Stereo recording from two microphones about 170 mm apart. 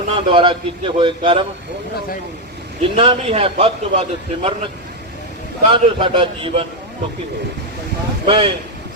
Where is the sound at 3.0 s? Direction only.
35° right (ahead or behind).